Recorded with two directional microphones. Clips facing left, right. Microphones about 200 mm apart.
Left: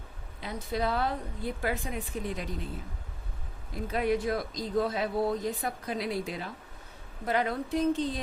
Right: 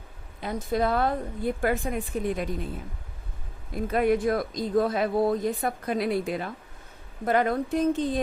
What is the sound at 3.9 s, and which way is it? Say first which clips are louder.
A woman's voice: right 5 dB; 55° right (ahead or behind).